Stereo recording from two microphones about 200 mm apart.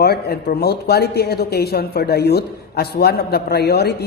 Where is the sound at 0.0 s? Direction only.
55° left (ahead or behind).